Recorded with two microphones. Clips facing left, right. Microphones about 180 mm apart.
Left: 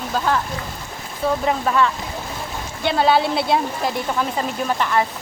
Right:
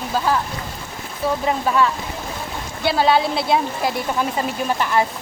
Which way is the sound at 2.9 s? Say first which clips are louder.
Even; centre (ahead or behind).